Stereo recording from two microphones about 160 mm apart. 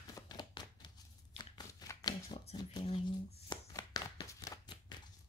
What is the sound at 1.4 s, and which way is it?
Shuffling cards, 25° left (ahead or behind).